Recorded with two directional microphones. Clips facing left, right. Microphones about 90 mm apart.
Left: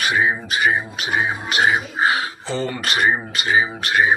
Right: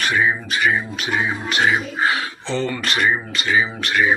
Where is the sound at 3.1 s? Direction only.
25° left (ahead or behind).